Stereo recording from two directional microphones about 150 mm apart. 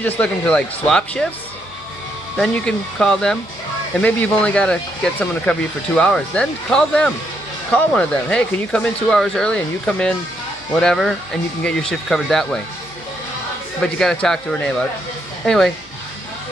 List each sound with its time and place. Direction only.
0.0 s speech: 10° left (ahead or behind)
2.3 s speech: 5° left (ahead or behind)
13.9 s speech: 5° left (ahead or behind)